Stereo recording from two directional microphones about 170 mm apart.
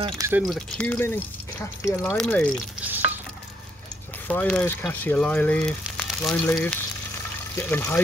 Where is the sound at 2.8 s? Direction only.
10° right (ahead or behind).